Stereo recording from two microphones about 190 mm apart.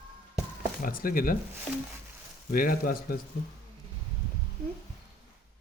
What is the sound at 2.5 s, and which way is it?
Speech, 50° left (ahead or behind).